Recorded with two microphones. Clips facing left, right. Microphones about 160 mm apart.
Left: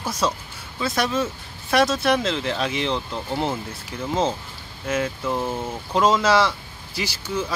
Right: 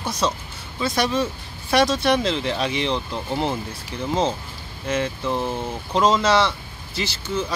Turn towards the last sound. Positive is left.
turn(degrees=10)  # may be behind; listen again after turning